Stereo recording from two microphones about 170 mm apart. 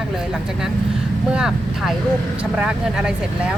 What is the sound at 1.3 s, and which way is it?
Speech, 5° right (ahead or behind).